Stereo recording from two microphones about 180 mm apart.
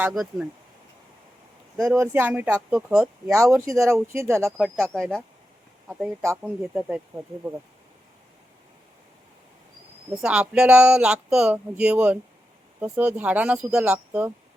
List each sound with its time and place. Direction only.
0.0 s speech: centre (ahead or behind)
1.7 s speech: 10° right (ahead or behind)
3.3 s speech: 15° right (ahead or behind)
4.5 s speech: 5° right (ahead or behind)
6.2 s speech: 10° right (ahead or behind)
10.2 s speech: 5° right (ahead or behind)